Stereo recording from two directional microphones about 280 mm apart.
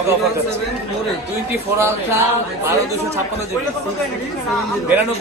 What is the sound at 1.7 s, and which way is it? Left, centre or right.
Speech, centre.